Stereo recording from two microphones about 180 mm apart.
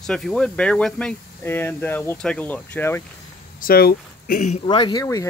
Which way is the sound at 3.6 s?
55° left (ahead or behind).